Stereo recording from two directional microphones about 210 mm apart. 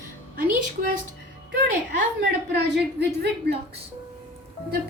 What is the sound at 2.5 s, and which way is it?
A woman's voice, 55° right (ahead or behind).